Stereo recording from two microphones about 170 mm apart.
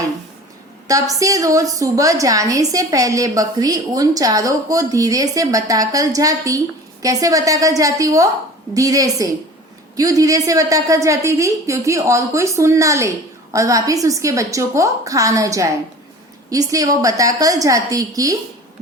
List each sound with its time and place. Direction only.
0.9 s a woman's voice: 20° right (ahead or behind)